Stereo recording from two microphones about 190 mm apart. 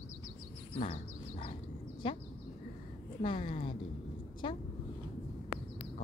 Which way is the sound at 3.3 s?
25° left (ahead or behind).